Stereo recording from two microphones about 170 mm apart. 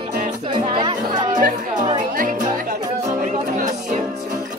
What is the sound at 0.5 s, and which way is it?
Music, 25° right (ahead or behind).